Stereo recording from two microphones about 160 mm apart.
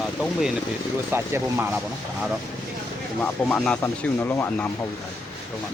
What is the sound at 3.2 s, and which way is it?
Speech, 5° left (ahead or behind).